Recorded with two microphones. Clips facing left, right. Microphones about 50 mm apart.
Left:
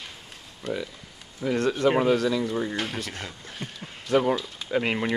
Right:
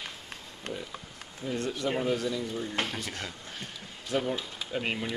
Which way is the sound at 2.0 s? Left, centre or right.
Left.